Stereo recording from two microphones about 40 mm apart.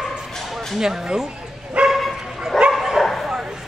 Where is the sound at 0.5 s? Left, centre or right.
Centre.